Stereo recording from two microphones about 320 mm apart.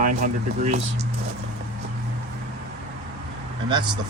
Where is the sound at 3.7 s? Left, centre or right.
Centre.